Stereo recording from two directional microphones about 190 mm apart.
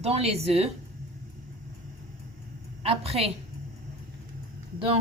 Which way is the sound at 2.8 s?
30° right (ahead or behind).